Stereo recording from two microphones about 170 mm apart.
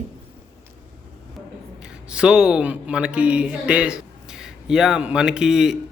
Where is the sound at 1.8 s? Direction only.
5° right (ahead or behind).